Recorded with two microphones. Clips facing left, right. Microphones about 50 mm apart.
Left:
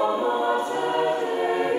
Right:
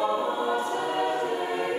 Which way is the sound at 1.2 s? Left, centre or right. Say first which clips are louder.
Left 4 dB; left.